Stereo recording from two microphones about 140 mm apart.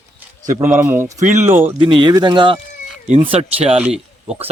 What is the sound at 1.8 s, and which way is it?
Speech, 35° right (ahead or behind).